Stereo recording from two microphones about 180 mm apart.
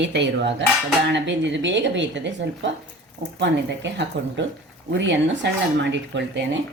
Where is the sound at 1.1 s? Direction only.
85° right.